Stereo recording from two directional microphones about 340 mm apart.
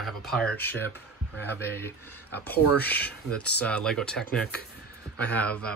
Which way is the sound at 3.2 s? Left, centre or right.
Centre.